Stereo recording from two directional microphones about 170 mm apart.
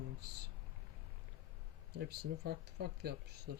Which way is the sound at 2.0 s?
70° right (ahead or behind).